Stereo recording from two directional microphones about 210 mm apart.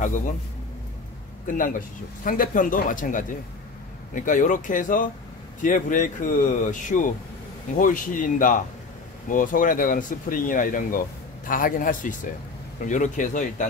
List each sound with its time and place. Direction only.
1.5 s speech: 40° left (ahead or behind)